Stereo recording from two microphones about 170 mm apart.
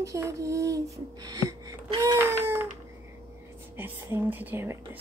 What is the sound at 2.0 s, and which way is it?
Speech, 15° right (ahead or behind).